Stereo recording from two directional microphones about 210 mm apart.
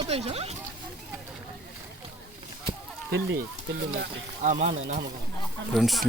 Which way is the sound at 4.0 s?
40° right (ahead or behind).